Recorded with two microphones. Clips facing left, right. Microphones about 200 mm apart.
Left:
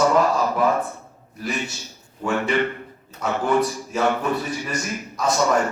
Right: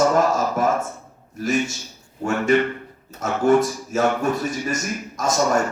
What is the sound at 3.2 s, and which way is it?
A man's voice, 45° right (ahead or behind).